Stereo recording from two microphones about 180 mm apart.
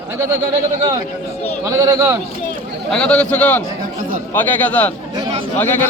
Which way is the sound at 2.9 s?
5° left (ahead or behind).